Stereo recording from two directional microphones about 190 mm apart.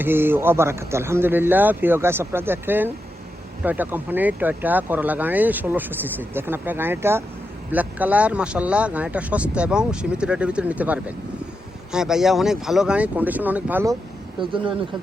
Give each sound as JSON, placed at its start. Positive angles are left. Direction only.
{"t": 0.0, "sound": "speech", "side_deg": -10}
{"t": 14.5, "sound": "speech", "side_deg": -25}